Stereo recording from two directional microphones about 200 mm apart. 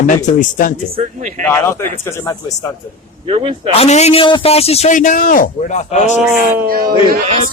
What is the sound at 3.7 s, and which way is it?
A man's voice, 30° left (ahead or behind).